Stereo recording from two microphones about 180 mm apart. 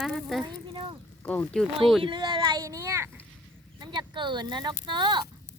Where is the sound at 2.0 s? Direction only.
25° right (ahead or behind).